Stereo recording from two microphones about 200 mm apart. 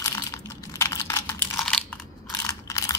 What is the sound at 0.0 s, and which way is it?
Computer keyboard, 15° left (ahead or behind).